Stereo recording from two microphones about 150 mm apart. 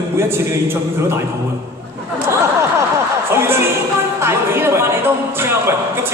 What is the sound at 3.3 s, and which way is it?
Music, 15° right (ahead or behind).